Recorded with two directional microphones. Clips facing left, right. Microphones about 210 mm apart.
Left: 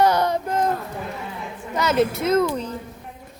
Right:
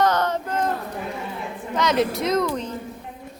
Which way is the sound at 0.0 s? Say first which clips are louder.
Left 2 dB; 10° left (ahead or behind).